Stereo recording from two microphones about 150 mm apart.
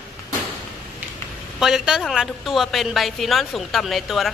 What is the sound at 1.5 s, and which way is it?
A woman's voice, 5° right (ahead or behind).